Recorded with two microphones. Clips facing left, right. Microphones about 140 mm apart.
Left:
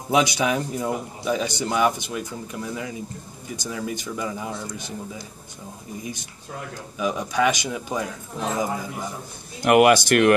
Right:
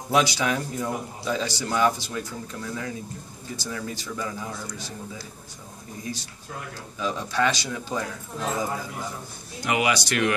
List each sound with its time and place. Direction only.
0.1 s a man's voice: 20° left (ahead or behind)
7.0 s a man's voice: 15° left (ahead or behind)
9.6 s speech: 55° left (ahead or behind)